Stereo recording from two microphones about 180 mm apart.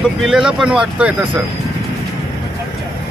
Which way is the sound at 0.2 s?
5° right (ahead or behind).